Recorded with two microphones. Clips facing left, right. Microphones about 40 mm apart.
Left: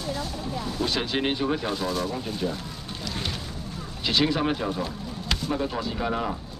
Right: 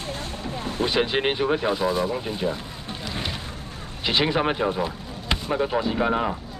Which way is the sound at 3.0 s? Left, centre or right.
Right.